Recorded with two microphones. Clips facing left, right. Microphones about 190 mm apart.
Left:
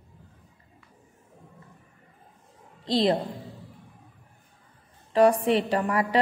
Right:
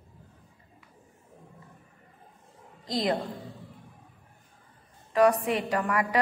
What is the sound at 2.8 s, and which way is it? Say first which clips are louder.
Speech: left 5 dB; 30° left (ahead or behind).